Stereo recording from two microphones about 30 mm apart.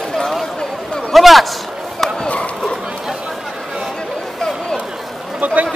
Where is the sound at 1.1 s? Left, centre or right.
Centre.